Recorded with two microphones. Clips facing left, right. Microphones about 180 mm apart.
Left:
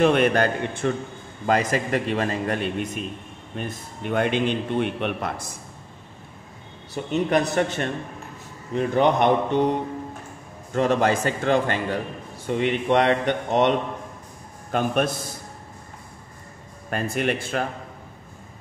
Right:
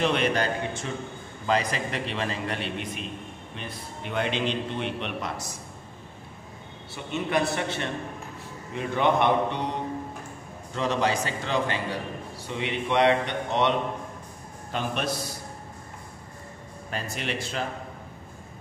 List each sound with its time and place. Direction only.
0.0 s a man's voice: 50° left (ahead or behind)
7.2 s a man's voice: 45° left (ahead or behind)
10.7 s a man's voice: 50° left (ahead or behind)
16.9 s a man's voice: 55° left (ahead or behind)